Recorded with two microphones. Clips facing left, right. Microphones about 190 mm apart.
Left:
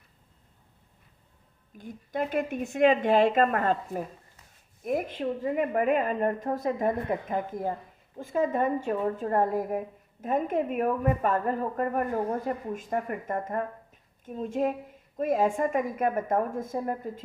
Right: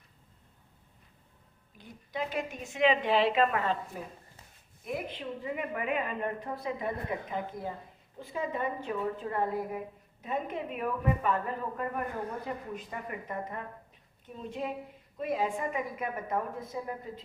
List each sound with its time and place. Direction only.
1.8 s a woman's voice: 50° left (ahead or behind)